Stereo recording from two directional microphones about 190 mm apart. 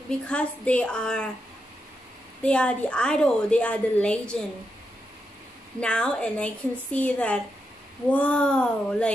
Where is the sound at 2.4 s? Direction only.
5° left (ahead or behind).